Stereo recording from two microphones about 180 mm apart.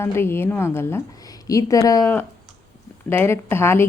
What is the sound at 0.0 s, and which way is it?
Speech, 15° left (ahead or behind).